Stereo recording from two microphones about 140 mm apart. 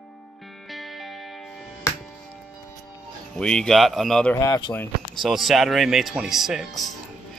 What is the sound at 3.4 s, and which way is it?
Speech, 5° left (ahead or behind).